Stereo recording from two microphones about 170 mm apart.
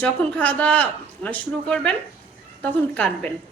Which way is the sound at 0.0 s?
10° left (ahead or behind).